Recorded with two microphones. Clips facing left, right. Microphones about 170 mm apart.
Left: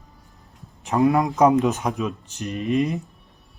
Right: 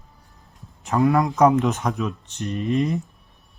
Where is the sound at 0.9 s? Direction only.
15° left (ahead or behind).